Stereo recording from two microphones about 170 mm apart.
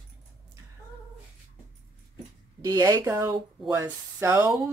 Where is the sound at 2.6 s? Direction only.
20° right (ahead or behind).